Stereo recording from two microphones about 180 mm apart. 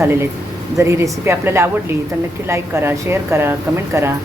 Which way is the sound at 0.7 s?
15° right (ahead or behind).